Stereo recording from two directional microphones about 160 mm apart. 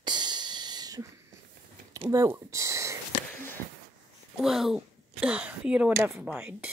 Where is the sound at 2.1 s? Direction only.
20° right (ahead or behind).